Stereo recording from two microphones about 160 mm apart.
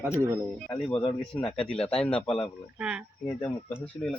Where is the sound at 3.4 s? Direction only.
10° left (ahead or behind).